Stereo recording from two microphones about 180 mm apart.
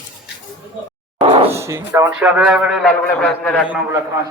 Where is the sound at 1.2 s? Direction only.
30° right (ahead or behind).